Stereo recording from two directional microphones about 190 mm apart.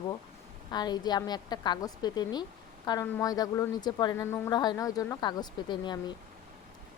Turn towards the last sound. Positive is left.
turn(degrees=20)  # may be behind; listen again after turning